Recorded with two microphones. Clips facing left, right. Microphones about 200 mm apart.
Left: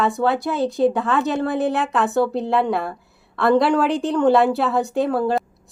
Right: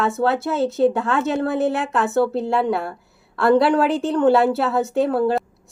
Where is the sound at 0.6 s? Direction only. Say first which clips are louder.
Right 1 dB; centre (ahead or behind).